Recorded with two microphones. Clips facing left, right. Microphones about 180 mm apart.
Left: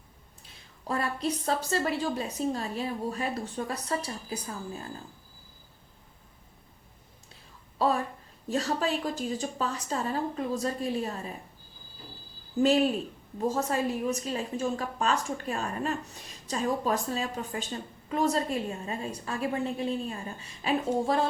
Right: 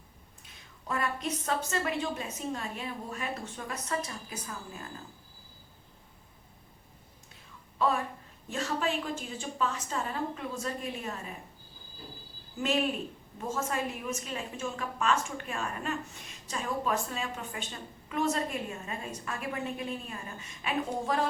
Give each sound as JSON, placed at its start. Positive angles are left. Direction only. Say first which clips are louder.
{"t": 0.4, "sound": "a woman's voice", "louder": "left 3 dB", "side_deg": 35}
{"t": 7.8, "sound": "a woman's voice", "louder": "left 2 dB", "side_deg": 35}
{"t": 12.5, "sound": "a woman's voice", "louder": "left 6 dB", "side_deg": 35}